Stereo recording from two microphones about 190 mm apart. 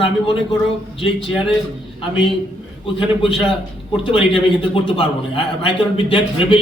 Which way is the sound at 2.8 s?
30° left (ahead or behind).